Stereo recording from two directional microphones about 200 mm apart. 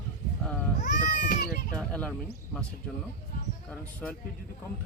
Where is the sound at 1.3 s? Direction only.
50° left (ahead or behind).